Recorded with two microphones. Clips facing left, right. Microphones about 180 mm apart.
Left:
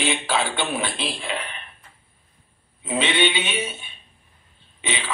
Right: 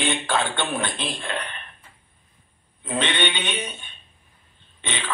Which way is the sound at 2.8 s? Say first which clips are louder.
Left 3 dB; 5° left (ahead or behind).